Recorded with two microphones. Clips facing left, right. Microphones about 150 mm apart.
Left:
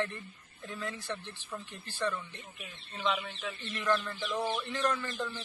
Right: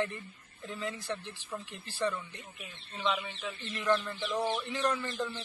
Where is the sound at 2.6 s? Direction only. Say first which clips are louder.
Even; centre (ahead or behind).